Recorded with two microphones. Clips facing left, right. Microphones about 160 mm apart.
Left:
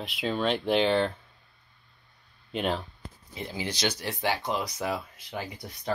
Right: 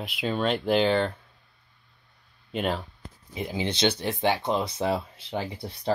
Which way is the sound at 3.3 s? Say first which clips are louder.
Right 5 dB; 15° right (ahead or behind).